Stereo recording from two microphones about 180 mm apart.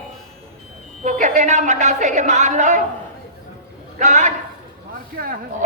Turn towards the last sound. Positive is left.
turn(degrees=-50)  # may be behind; listen again after turning